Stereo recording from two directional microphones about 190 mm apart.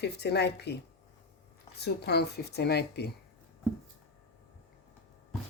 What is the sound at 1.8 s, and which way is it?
Speech, 60° left (ahead or behind).